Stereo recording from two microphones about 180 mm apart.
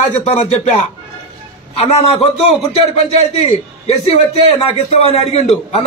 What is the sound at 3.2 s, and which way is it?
A man's voice, 35° left (ahead or behind).